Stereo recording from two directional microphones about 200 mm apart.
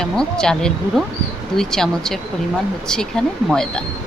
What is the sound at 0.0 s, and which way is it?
Speech, 5° left (ahead or behind).